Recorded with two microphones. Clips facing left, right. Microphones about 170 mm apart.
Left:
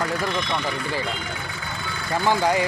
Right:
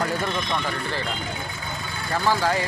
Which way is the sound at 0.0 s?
Centre (ahead or behind).